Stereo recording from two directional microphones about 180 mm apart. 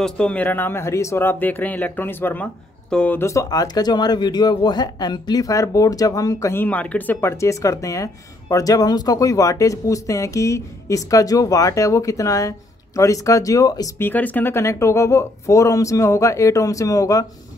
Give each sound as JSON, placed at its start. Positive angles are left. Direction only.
{"t": 0.0, "sound": "speech", "side_deg": 5}